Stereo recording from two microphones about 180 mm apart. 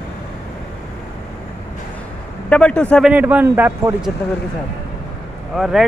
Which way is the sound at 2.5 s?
5° left (ahead or behind).